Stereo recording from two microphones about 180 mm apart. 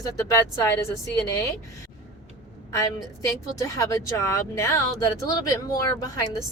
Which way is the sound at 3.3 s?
20° left (ahead or behind).